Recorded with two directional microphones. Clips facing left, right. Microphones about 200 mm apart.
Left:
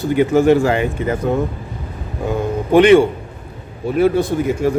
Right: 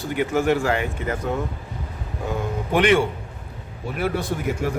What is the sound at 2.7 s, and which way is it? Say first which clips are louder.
Speech: left 9 dB; 25° left (ahead or behind).